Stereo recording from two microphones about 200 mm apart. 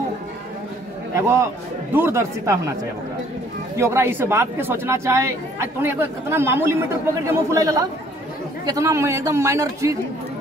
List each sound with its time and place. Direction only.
1.1 s speech: 15° right (ahead or behind)
3.7 s speech: 15° right (ahead or behind)